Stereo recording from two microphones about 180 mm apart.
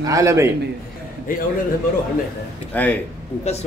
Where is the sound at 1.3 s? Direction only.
50° left (ahead or behind).